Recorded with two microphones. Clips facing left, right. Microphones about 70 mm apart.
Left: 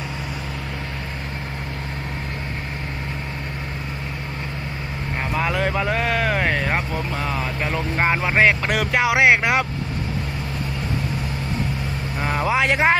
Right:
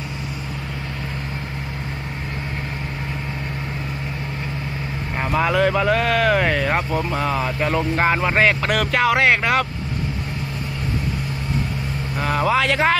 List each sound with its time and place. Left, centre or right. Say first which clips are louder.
5.3 s speech: right 5 dB; centre
12.4 s speech: even; centre